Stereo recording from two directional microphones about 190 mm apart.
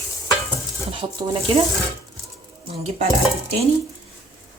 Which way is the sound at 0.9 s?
25° right (ahead or behind).